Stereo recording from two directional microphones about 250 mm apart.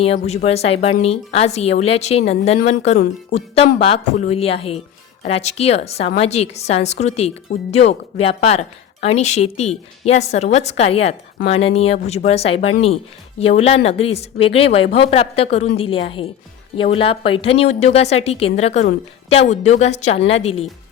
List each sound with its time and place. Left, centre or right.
0.0 s a woman's voice: left